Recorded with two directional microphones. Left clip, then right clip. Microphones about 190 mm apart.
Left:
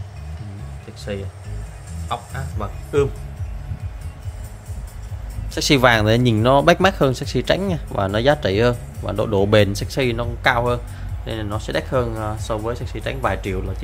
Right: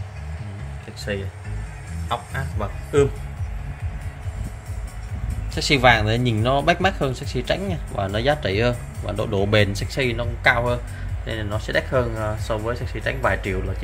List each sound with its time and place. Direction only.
1.1 s a man's voice: 5° left (ahead or behind)
5.5 s speech: 35° left (ahead or behind)